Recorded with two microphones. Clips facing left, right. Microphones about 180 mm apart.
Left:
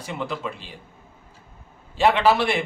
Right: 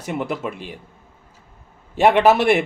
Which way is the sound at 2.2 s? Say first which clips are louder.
Right 5 dB; 60° right (ahead or behind).